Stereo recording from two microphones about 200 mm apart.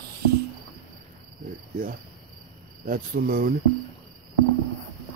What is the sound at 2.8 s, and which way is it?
Cricket, 45° right (ahead or behind).